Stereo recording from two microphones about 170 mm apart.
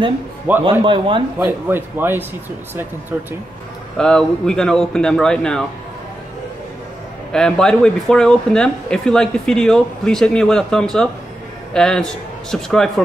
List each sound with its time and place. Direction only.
0.5 s speech: 10° right (ahead or behind)
0.8 s speech: 30° right (ahead or behind)
1.4 s speech: 10° right (ahead or behind)
4.0 s speech: 5° left (ahead or behind)
7.3 s speech: 5° left (ahead or behind)